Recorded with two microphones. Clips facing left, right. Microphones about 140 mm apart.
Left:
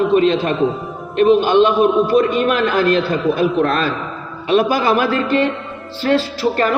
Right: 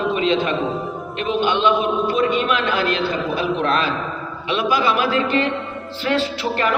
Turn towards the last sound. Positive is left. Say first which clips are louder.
# left 4 dB
turn(degrees=40)  # may be behind; listen again after turning